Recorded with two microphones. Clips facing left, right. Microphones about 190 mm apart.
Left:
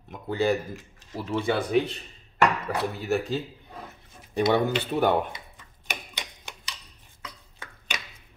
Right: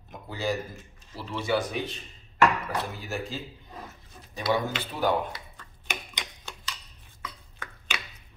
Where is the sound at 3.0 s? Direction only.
65° left (ahead or behind).